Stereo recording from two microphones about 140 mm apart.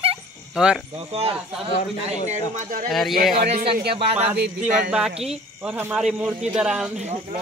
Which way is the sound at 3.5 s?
40° right (ahead or behind).